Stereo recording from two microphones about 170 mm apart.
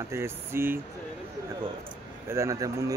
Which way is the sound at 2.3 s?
15° right (ahead or behind).